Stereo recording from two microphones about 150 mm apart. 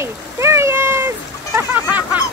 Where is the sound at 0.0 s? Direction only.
15° right (ahead or behind).